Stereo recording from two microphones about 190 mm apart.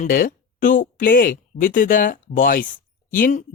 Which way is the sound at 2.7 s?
45° left (ahead or behind).